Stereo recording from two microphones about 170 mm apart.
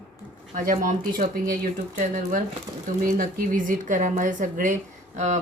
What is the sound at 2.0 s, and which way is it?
Speech, 45° right (ahead or behind).